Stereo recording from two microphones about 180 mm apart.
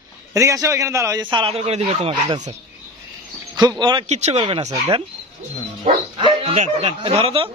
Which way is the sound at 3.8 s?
25° right (ahead or behind).